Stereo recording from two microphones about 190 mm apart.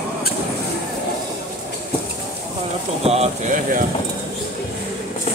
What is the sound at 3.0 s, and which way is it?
Speech, 35° right (ahead or behind).